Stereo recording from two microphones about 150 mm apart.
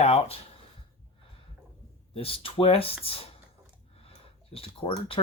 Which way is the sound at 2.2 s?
40° left (ahead or behind).